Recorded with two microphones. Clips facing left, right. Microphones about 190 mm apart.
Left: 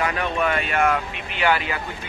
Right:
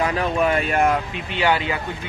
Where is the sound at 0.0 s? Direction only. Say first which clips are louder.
Right 3 dB; 30° right (ahead or behind).